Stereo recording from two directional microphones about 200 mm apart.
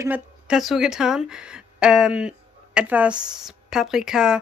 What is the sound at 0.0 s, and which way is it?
A woman's voice, 5° right (ahead or behind).